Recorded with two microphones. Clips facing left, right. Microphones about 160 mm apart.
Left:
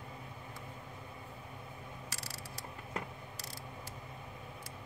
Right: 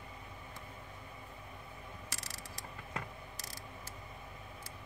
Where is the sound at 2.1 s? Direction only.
40° left (ahead or behind).